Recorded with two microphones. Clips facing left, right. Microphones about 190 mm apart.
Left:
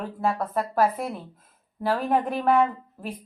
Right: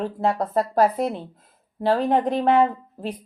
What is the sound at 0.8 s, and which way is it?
Speech, 25° right (ahead or behind).